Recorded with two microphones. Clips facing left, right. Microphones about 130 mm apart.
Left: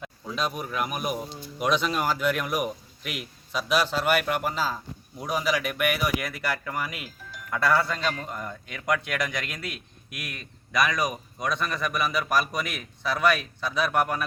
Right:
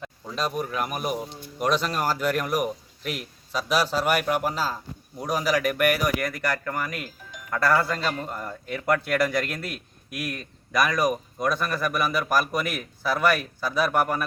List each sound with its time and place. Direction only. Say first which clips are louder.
0.0 s speech: right 1 dB; centre (ahead or behind)